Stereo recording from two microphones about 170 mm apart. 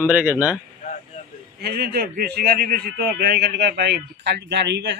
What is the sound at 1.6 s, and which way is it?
Speech, 70° right (ahead or behind).